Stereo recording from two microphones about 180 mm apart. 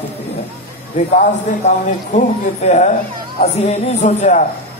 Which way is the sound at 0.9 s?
45° left (ahead or behind).